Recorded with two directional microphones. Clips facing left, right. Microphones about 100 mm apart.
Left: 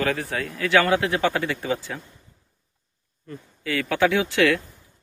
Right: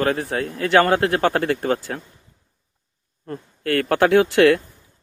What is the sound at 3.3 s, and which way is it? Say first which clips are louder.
Speech: right 6 dB; 55° right (ahead or behind).